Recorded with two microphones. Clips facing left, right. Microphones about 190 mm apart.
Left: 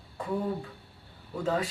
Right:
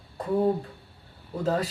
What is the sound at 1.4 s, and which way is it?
Speech, 40° right (ahead or behind).